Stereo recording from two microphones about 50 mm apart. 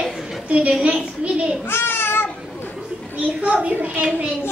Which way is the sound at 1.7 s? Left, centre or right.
Left.